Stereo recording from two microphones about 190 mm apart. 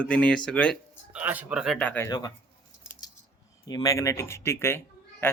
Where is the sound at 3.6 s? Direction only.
20° left (ahead or behind).